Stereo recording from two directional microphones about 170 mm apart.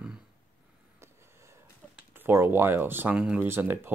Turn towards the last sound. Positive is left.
turn(degrees=-15)  # may be behind; listen again after turning